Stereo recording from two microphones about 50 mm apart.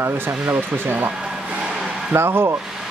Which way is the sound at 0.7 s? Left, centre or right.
Right.